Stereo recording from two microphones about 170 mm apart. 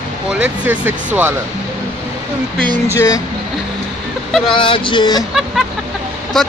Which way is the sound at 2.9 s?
20° left (ahead or behind).